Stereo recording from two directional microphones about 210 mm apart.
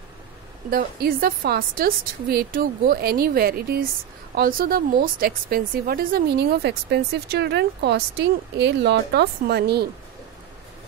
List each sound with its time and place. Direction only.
0.7 s a woman's voice: 45° right (ahead or behind)